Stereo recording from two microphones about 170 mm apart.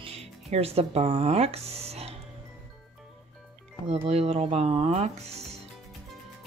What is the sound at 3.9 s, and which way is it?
Speech, 40° right (ahead or behind).